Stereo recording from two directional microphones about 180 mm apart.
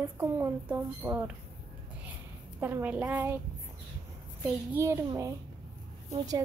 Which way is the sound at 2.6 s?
10° right (ahead or behind).